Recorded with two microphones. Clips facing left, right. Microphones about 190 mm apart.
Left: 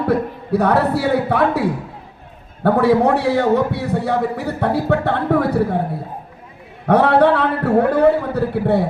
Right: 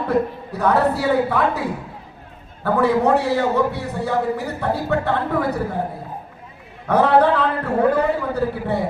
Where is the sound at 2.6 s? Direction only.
65° left (ahead or behind).